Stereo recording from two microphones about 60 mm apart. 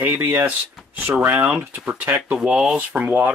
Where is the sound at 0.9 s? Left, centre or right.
Right.